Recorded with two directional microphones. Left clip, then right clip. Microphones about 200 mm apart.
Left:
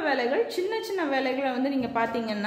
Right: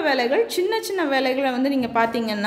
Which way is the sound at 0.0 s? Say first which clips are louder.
Right 5 dB; 25° right (ahead or behind).